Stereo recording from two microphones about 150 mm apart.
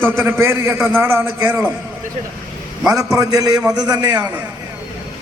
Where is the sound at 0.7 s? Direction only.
5° right (ahead or behind).